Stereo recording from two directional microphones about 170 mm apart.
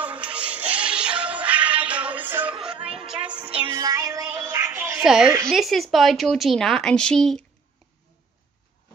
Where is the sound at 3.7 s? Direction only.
25° right (ahead or behind); by 5.3 s 5° right (ahead or behind).